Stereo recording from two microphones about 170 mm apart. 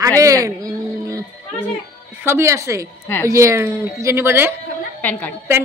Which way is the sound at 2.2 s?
15° right (ahead or behind).